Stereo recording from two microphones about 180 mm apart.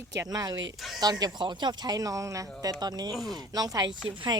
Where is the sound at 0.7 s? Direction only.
Centre (ahead or behind).